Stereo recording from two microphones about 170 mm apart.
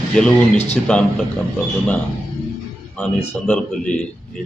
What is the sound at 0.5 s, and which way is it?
Speech, 40° left (ahead or behind).